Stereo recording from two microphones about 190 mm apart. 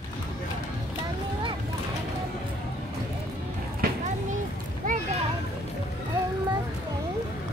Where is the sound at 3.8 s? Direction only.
50° right (ahead or behind).